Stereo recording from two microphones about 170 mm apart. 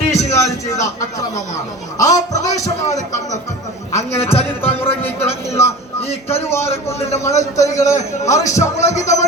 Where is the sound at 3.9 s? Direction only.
35° left (ahead or behind).